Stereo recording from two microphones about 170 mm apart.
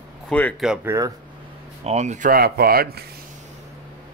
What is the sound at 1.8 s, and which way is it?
Speech, 40° right (ahead or behind).